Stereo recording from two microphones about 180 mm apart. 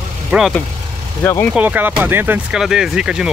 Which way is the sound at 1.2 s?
10° left (ahead or behind).